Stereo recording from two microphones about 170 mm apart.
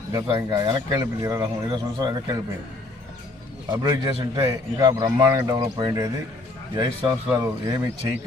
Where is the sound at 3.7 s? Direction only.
25° right (ahead or behind).